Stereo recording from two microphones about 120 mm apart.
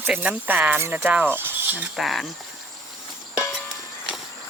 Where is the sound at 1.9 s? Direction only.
Centre (ahead or behind).